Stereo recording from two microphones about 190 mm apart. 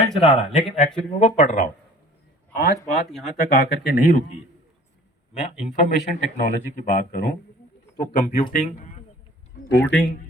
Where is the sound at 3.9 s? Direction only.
45° left (ahead or behind).